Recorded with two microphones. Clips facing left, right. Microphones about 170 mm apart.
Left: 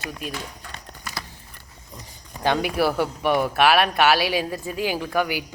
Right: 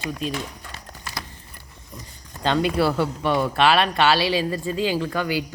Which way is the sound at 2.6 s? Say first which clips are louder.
Right 1 dB; 10° left (ahead or behind).